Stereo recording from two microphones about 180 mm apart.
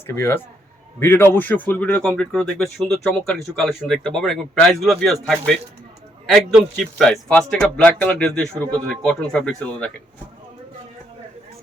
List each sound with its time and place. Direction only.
0.1 s speech: 15° left (ahead or behind)